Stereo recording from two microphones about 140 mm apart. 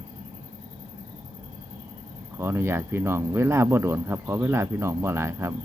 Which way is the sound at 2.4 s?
15° right (ahead or behind).